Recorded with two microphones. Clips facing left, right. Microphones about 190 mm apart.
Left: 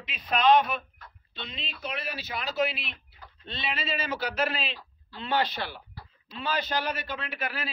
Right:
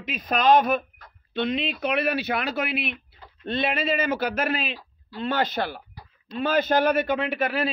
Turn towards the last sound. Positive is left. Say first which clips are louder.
# right 12 dB
turn(degrees=-60)  # may be behind; listen again after turning